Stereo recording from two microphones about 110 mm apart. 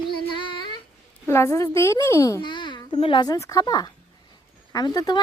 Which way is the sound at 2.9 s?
60° left (ahead or behind).